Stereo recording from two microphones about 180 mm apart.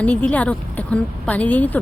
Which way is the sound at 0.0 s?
5° left (ahead or behind).